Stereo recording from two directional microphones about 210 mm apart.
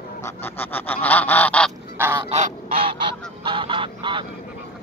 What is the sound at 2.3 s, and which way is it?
Goose, 35° right (ahead or behind).